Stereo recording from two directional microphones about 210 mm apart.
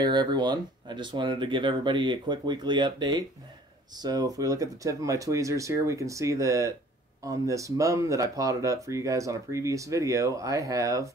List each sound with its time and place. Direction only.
0.0 s speech: 20° right (ahead or behind)